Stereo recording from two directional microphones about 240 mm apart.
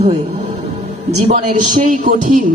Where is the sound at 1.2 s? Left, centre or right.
Right.